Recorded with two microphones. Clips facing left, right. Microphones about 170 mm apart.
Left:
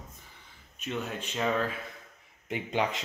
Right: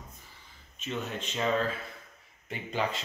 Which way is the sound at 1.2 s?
5° left (ahead or behind).